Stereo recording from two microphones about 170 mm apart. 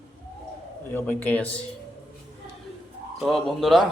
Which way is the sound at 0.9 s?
10° left (ahead or behind).